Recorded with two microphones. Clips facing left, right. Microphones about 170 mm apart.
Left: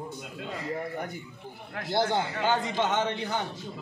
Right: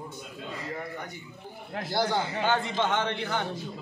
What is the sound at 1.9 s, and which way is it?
A man's voice, 25° left (ahead or behind).